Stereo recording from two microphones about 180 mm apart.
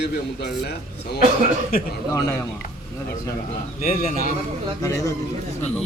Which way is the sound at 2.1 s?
20° left (ahead or behind).